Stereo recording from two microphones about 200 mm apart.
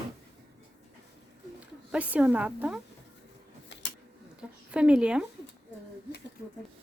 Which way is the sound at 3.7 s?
60° left (ahead or behind).